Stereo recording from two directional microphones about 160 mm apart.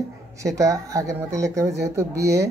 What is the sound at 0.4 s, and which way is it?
Speech, 20° right (ahead or behind).